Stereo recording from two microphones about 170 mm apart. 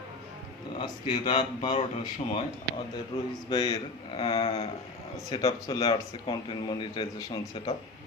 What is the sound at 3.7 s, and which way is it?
Speech, 35° left (ahead or behind).